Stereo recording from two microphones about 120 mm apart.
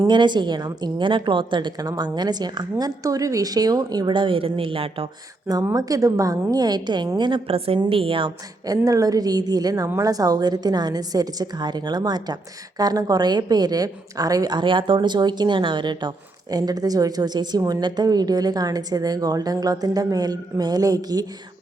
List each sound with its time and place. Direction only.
0.1 s a woman's voice: 40° right (ahead or behind)
5.5 s a woman's voice: 30° right (ahead or behind); by 8.3 s 50° right (ahead or behind)
8.6 s a woman's voice: 30° right (ahead or behind)